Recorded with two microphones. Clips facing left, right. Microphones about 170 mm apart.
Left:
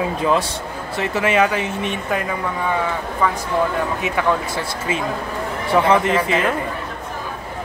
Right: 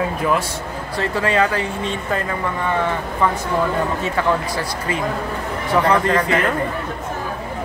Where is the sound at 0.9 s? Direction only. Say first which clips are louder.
Left 1 dB; 20° left (ahead or behind).